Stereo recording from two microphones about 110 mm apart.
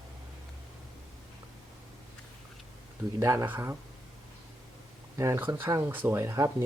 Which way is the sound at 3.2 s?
25° right (ahead or behind).